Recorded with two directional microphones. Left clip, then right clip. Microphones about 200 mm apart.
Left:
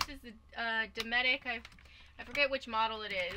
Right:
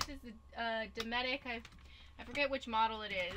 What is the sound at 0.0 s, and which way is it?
Speech, centre (ahead or behind).